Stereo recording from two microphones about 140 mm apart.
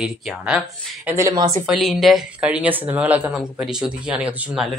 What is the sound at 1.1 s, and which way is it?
Speech, 20° right (ahead or behind).